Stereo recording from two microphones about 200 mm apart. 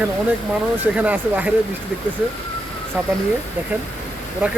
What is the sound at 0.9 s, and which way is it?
Speech, 5° right (ahead or behind).